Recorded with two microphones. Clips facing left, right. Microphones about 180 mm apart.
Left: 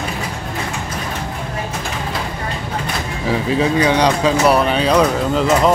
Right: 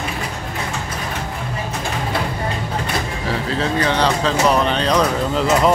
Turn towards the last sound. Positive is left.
turn(degrees=0)  # may be behind; listen again after turning